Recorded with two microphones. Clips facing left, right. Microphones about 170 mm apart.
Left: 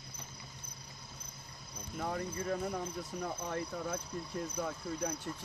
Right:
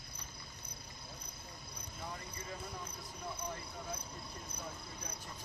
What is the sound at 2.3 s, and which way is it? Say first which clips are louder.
Speech: left 10 dB; 55° left (ahead or behind).